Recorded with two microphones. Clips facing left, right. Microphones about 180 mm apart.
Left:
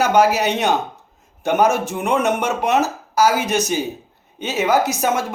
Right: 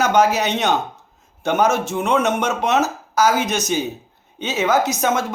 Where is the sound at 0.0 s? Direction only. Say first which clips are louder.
Left 1 dB; 10° left (ahead or behind).